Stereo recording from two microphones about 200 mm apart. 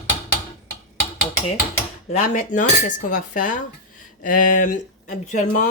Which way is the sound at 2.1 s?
35° left (ahead or behind).